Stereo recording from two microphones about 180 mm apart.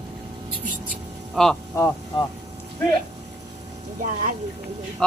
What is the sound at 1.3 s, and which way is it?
Speech, centre (ahead or behind).